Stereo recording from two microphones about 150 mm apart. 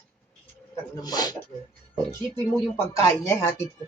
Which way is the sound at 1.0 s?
25° left (ahead or behind).